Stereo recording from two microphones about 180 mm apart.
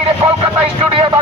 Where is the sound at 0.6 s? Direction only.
30° right (ahead or behind).